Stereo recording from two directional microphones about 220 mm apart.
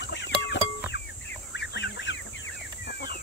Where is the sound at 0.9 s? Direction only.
55° left (ahead or behind).